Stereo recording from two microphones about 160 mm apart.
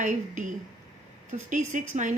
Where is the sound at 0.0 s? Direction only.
50° right (ahead or behind).